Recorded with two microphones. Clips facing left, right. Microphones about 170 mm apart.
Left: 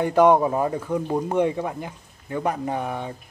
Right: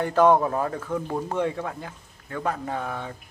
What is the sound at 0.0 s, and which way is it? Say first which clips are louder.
Speech: left 2 dB; 15° left (ahead or behind).